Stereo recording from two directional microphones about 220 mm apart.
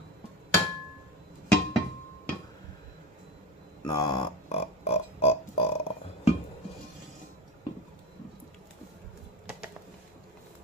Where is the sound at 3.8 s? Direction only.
20° left (ahead or behind).